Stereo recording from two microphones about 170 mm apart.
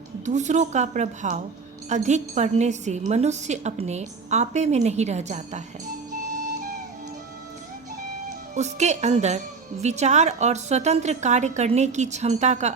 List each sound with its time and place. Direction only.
0.3 s a woman's voice: 45° right (ahead or behind)
8.5 s a woman's voice: 40° right (ahead or behind)